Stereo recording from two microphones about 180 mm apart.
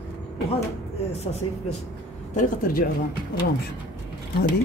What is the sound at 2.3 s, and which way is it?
Speech, 45° left (ahead or behind).